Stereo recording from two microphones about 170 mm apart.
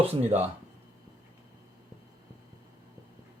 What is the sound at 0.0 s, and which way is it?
Speech, 35° right (ahead or behind).